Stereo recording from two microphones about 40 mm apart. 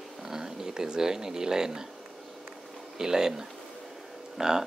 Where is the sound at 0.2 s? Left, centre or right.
Centre.